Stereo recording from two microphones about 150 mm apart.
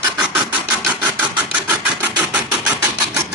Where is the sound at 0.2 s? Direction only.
10° right (ahead or behind).